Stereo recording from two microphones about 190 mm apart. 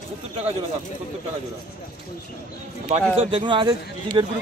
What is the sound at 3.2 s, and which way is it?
Speech, 30° right (ahead or behind).